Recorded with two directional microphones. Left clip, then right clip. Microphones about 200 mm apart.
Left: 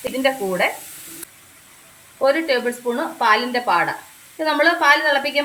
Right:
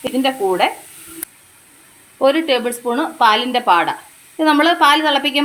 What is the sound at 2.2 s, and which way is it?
Speech, 35° right (ahead or behind).